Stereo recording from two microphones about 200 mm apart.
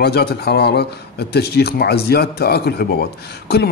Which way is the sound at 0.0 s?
55° left (ahead or behind).